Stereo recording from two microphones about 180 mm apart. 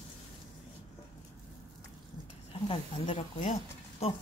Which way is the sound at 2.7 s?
30° left (ahead or behind).